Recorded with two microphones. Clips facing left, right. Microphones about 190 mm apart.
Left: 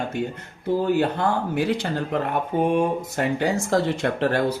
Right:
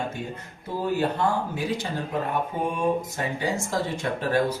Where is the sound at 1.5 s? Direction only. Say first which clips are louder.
Left 5 dB; 70° left (ahead or behind).